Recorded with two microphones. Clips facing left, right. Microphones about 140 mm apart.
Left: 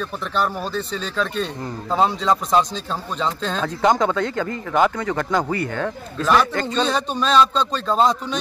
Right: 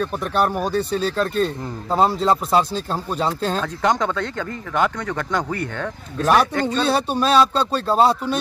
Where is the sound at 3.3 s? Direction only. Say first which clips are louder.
Right 3 dB; 45° right (ahead or behind).